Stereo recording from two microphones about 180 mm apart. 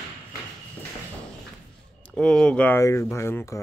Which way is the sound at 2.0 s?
5° left (ahead or behind).